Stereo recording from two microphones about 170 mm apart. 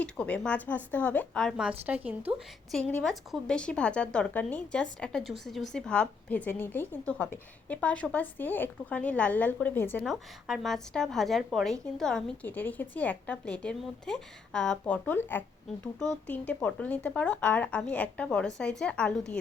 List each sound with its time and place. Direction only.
0.0 s speech: 5° left (ahead or behind); by 2.3 s 10° right (ahead or behind)
2.7 s a woman's voice: 5° left (ahead or behind)